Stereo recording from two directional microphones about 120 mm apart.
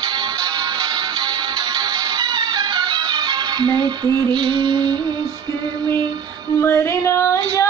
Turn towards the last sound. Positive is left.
turn(degrees=25)  # may be behind; listen again after turning